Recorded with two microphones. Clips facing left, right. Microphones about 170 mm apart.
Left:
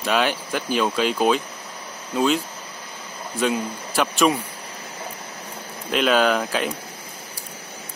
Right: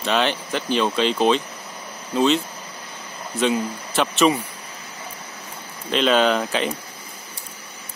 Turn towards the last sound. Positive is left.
turn(degrees=5)  # may be behind; listen again after turning